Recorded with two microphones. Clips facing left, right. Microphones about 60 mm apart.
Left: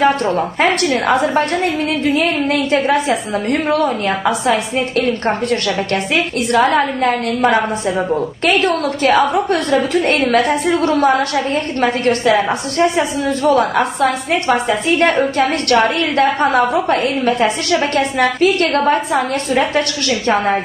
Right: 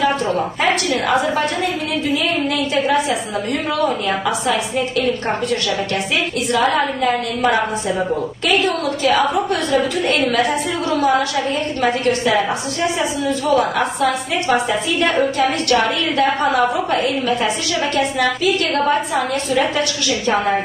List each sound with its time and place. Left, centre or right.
0.0 s a woman's voice: left
1.3 s a woman's voice: left
6.5 s a sound: left
8.5 s a woman's voice: left